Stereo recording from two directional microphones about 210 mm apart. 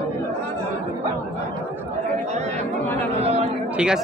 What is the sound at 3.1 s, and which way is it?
Chatter, 30° right (ahead or behind).